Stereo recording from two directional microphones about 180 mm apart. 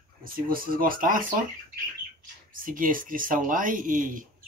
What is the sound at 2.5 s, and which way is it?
Speech, 50° right (ahead or behind).